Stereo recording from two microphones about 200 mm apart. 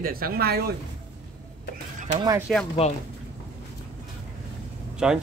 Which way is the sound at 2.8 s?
30° left (ahead or behind).